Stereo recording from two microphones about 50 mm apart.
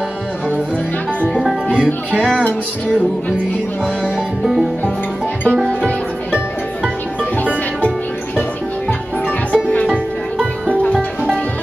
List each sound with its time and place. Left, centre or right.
9.5 s music: left